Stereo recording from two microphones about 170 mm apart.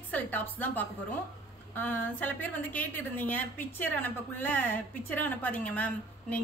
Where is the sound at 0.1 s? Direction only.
10° left (ahead or behind).